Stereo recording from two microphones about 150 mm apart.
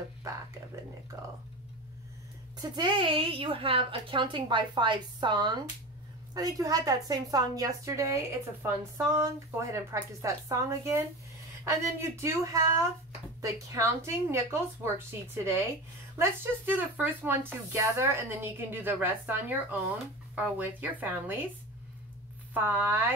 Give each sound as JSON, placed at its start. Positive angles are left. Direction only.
{"t": 1.1, "sound": "a woman's voice", "side_deg": -25}
{"t": 2.6, "sound": "a woman's voice", "side_deg": -30}
{"t": 22.5, "sound": "speech", "side_deg": -10}